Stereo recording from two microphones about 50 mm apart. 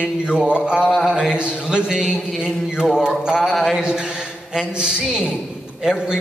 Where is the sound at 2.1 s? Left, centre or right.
Centre.